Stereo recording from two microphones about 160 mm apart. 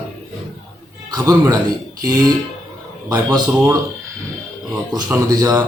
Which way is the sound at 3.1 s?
25° right (ahead or behind).